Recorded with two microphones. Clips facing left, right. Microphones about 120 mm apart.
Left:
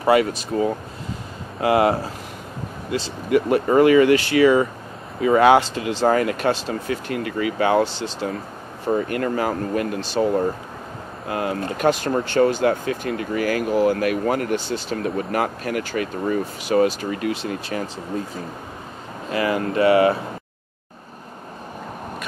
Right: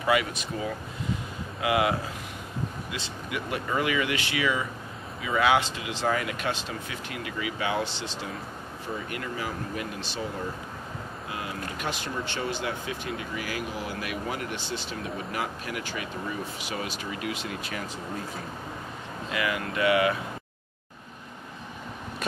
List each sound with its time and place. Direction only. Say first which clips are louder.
0.0 s speech: left 8 dB; 40° left (ahead or behind)
8.8 s speech: left 13 dB; 55° left (ahead or behind); by 17.8 s 35° left (ahead or behind)
19.3 s speech: left 9 dB; 35° left (ahead or behind)